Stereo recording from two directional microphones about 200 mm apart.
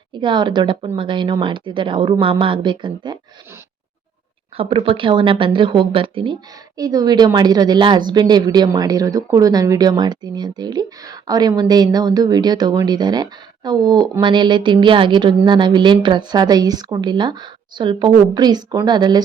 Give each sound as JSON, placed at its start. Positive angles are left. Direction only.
{"t": 0.1, "sound": "a woman's voice", "side_deg": -25}
{"t": 4.5, "sound": "a woman's voice", "side_deg": -25}